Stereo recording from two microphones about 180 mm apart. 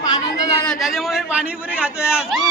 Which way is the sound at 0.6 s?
Centre (ahead or behind).